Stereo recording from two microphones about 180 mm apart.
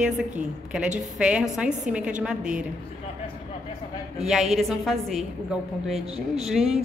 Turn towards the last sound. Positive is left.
turn(degrees=0)  # may be behind; listen again after turning